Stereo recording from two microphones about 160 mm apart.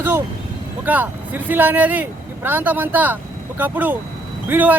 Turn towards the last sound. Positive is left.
turn(degrees=-10)  # may be behind; listen again after turning